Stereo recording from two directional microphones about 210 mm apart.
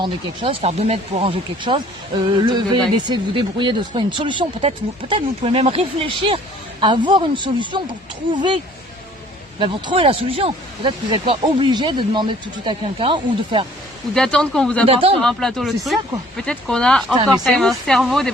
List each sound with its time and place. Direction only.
0.0 s speech: 30° right (ahead or behind)
14.1 s speech: 5° left (ahead or behind)
14.8 s speech: 25° right (ahead or behind)
15.2 s speech: centre (ahead or behind)